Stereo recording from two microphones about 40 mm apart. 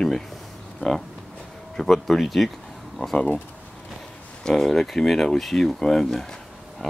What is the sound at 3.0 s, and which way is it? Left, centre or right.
Speech, left.